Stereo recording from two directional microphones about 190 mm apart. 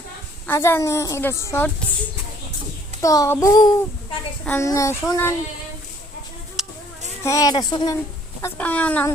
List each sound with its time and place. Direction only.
0.4 s a woman's voice: 15° left (ahead or behind)
3.0 s child singing: 20° left (ahead or behind)
4.4 s a woman's voice: 15° left (ahead or behind)
6.6 s a sound: centre (ahead or behind)
7.2 s child singing: 15° left (ahead or behind)
8.4 s a woman's voice: 10° left (ahead or behind)